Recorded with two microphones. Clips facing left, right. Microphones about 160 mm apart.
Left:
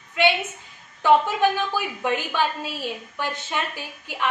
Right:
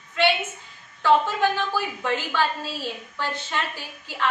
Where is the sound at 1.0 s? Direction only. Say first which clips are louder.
Left 2 dB; 15° left (ahead or behind).